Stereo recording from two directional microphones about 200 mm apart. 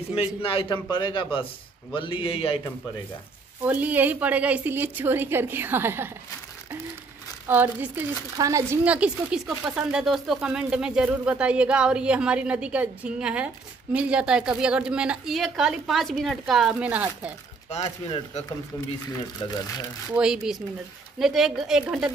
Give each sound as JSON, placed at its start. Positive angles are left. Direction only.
{"t": 0.1, "sound": "a man's voice", "side_deg": 30}
{"t": 3.6, "sound": "a woman's voice", "side_deg": -10}
{"t": 7.4, "sound": "speech", "side_deg": -10}
{"t": 17.8, "sound": "speech", "side_deg": 35}
{"t": 20.2, "sound": "speech", "side_deg": -5}